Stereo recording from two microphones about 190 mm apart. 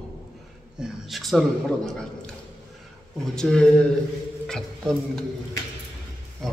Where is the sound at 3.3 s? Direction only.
5° left (ahead or behind).